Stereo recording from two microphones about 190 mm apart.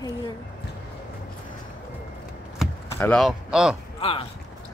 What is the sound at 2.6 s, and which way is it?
Chop, centre (ahead or behind).